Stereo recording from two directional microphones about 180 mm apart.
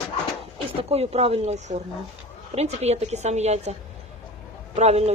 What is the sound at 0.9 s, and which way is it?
A woman's voice, 35° right (ahead or behind).